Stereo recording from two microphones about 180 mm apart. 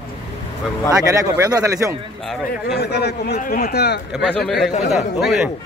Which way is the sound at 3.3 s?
50° left (ahead or behind).